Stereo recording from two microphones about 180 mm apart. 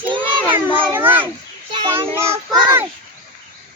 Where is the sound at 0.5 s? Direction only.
10° right (ahead or behind).